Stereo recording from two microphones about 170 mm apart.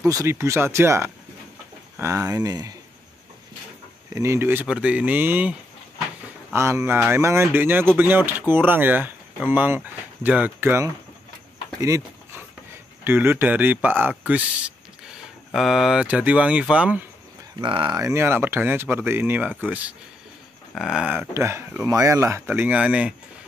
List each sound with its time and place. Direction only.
0.0 s speech: 15° right (ahead or behind)
4.1 s speech: 15° right (ahead or behind)
11.8 s a sound: 15° right (ahead or behind)
13.0 s a man's voice: 15° right (ahead or behind)
17.6 s speech: 25° right (ahead or behind); by 21.3 s 5° right (ahead or behind)
21.3 s speech: 15° right (ahead or behind)